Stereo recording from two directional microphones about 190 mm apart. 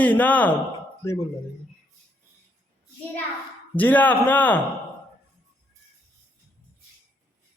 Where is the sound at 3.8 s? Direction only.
10° left (ahead or behind).